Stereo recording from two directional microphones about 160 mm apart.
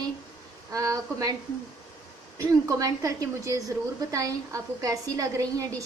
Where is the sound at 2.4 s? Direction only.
20° right (ahead or behind).